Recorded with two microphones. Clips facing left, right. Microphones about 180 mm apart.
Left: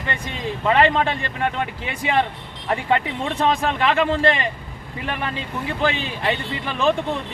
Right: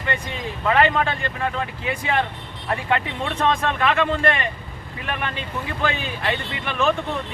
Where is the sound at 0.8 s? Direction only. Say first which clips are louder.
Left 1 dB; 25° left (ahead or behind).